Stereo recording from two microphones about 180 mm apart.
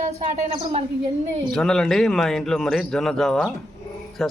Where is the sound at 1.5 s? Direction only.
5° left (ahead or behind).